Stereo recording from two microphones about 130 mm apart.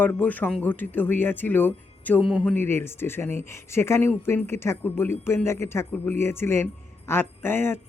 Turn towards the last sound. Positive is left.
turn(degrees=20)  # may be behind; listen again after turning